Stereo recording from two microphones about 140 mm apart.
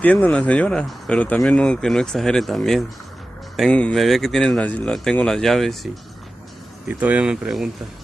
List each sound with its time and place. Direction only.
0.0 s speech: 10° left (ahead or behind)
6.9 s speech: 10° right (ahead or behind)